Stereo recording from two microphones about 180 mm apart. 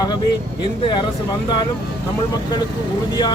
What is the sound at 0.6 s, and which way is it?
Speech, 25° left (ahead or behind).